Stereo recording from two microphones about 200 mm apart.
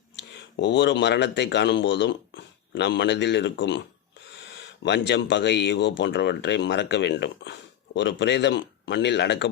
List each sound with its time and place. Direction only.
0.2 s speech: 60° left (ahead or behind)